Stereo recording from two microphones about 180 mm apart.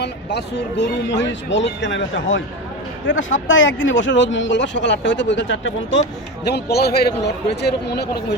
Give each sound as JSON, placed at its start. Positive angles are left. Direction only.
{"t": 0.0, "sound": "speech", "side_deg": 65}